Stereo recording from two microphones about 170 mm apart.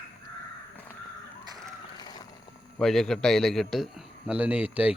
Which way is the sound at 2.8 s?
5° left (ahead or behind).